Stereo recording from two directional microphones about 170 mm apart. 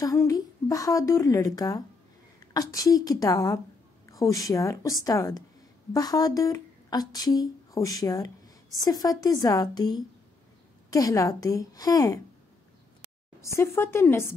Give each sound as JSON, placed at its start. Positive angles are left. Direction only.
{"t": 0.0, "sound": "a woman's voice", "side_deg": 20}
{"t": 13.4, "sound": "speech", "side_deg": 15}